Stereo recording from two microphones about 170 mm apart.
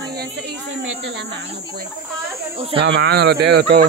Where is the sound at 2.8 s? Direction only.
80° right.